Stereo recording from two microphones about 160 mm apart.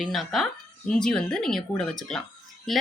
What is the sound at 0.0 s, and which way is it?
Speech, centre (ahead or behind).